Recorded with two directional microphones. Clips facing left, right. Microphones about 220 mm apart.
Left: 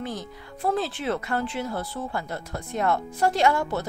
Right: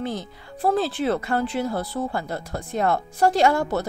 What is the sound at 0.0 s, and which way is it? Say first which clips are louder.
A woman's voice: right 4 dB; 30° right (ahead or behind).